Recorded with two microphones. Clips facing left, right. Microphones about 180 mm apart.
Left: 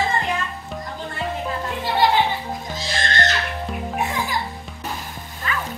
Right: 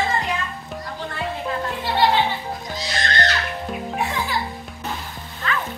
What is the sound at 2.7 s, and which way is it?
Music, 25° left (ahead or behind).